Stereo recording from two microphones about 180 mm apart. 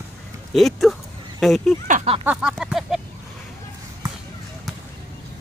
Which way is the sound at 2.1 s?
35° right (ahead or behind).